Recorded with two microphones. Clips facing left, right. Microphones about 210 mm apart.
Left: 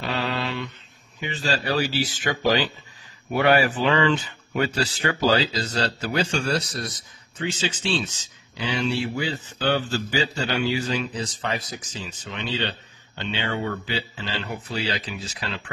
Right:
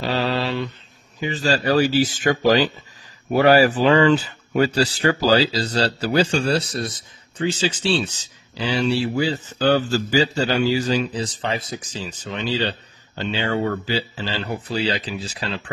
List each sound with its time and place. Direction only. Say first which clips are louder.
0.0 s mantra: right 5 dB; 35° right (ahead or behind)
1.2 s speech: right 6 dB; 40° right (ahead or behind)